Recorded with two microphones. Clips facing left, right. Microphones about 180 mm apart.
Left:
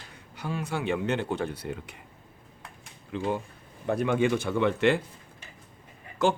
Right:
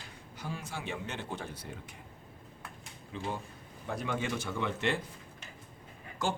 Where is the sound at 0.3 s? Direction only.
70° left (ahead or behind).